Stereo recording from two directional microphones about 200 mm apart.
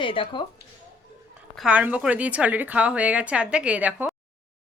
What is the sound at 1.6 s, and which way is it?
Speech, 5° right (ahead or behind).